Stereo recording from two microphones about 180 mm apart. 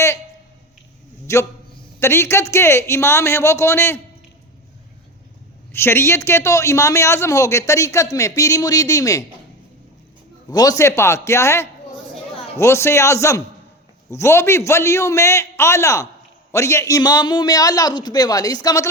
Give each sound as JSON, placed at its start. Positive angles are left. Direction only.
{"t": 1.3, "sound": "a man's voice", "side_deg": 15}
{"t": 5.7, "sound": "a man's voice", "side_deg": 15}
{"t": 10.5, "sound": "a man's voice", "side_deg": 20}